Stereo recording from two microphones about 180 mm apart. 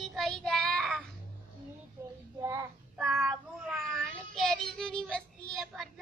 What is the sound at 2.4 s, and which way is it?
Child singing, 15° right (ahead or behind).